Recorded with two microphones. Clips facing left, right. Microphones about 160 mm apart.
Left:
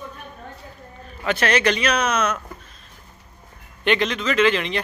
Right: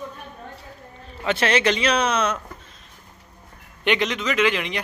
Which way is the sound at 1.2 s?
25° right (ahead or behind).